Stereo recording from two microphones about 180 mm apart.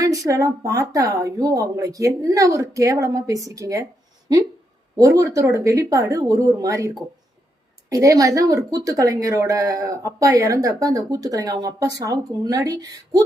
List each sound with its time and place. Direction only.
0.0 s a woman's voice: 20° right (ahead or behind)
4.9 s a woman's voice: 20° right (ahead or behind)